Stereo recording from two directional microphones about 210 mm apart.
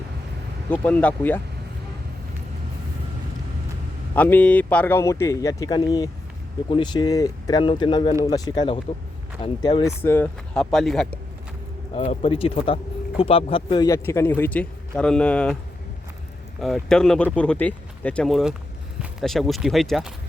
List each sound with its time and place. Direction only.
0.7 s speech: 5° left (ahead or behind)
4.1 s speech: 5° left (ahead or behind)
11.9 s speech: 30° left (ahead or behind); by 15.5 s 5° left (ahead or behind)
16.6 s speech: centre (ahead or behind)